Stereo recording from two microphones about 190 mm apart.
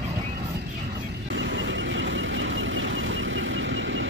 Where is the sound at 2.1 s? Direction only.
80° right.